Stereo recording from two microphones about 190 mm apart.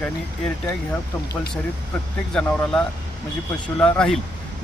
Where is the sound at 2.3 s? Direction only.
5° left (ahead or behind).